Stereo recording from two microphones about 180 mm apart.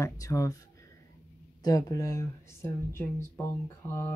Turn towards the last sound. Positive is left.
turn(degrees=15)  # may be behind; listen again after turning